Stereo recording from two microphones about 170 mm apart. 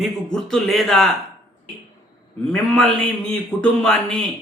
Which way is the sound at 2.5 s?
5° left (ahead or behind).